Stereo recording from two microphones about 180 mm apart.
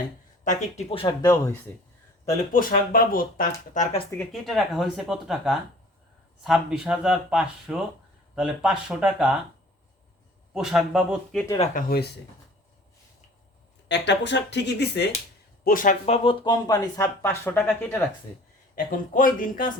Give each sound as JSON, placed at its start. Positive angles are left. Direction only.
{"t": 0.4, "sound": "speech", "side_deg": 35}
{"t": 2.4, "sound": "speech", "side_deg": 50}
{"t": 4.2, "sound": "speech", "side_deg": 0}
{"t": 10.5, "sound": "speech", "side_deg": -5}
{"t": 11.7, "sound": "speech", "side_deg": 60}
{"t": 13.8, "sound": "speech", "side_deg": 75}
{"t": 15.6, "sound": "speech", "side_deg": 50}
{"t": 16.0, "sound": "speech", "side_deg": 30}
{"t": 17.2, "sound": "speech", "side_deg": 10}
{"t": 18.9, "sound": "speech", "side_deg": 50}